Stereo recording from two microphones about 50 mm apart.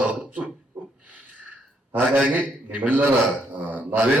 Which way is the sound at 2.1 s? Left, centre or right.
Right.